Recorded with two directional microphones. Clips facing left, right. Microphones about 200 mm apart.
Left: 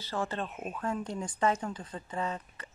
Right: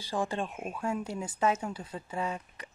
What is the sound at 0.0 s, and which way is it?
Speech, 15° right (ahead or behind).